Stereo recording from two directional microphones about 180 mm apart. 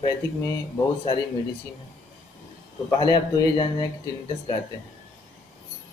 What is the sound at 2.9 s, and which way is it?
A man's voice, 25° left (ahead or behind).